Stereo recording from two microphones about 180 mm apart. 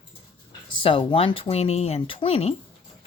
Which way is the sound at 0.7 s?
30° left (ahead or behind).